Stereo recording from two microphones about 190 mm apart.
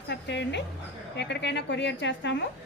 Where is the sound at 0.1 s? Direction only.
65° left (ahead or behind).